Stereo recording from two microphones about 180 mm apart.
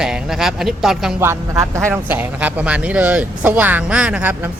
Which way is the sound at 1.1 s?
15° right (ahead or behind).